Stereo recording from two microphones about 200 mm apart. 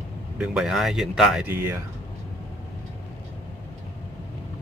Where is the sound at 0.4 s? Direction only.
Centre (ahead or behind).